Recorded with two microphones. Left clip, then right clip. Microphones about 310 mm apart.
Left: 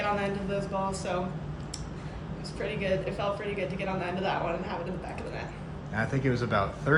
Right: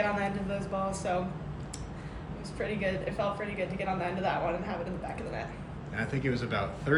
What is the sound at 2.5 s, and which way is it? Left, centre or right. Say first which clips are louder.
Speech: left 2 dB; centre.